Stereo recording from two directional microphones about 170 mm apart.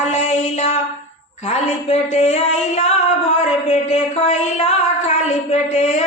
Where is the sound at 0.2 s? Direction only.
40° left (ahead or behind).